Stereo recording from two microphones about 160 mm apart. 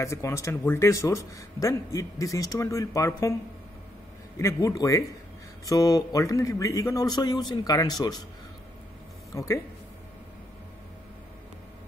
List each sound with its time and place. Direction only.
0.0 s speech: 20° left (ahead or behind)
4.4 s speech: 20° left (ahead or behind)
9.3 s speech: 20° left (ahead or behind)